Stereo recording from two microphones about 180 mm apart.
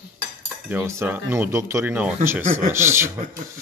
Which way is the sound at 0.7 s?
15° right (ahead or behind).